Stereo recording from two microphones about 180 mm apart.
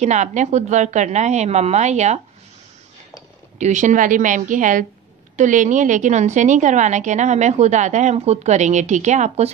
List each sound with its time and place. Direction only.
0.0 s a woman's voice: 40° right (ahead or behind)
3.5 s a woman's voice: 40° right (ahead or behind)